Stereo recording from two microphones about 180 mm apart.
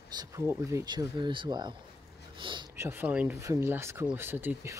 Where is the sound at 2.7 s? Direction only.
15° right (ahead or behind).